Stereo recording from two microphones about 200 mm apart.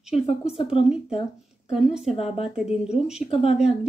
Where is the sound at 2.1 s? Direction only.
30° left (ahead or behind).